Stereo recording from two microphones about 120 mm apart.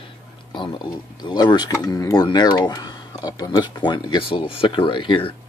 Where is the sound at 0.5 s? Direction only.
40° left (ahead or behind).